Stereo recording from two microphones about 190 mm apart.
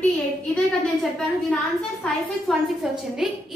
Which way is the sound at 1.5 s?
Centre (ahead or behind).